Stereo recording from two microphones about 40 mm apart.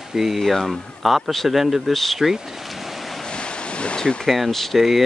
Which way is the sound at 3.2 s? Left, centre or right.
Left.